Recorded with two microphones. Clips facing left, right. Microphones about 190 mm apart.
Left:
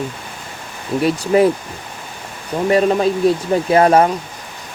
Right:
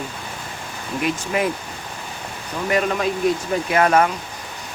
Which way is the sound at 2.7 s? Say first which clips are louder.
Left 6 dB; 30° left (ahead or behind).